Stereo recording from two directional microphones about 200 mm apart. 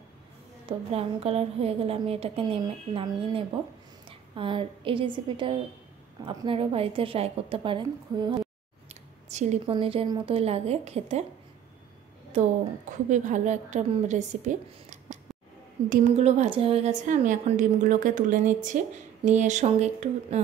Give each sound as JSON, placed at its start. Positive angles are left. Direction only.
{"t": 0.7, "sound": "a woman's voice", "side_deg": -30}
{"t": 9.3, "sound": "a woman's voice", "side_deg": -35}
{"t": 13.1, "sound": "a woman's voice", "side_deg": -35}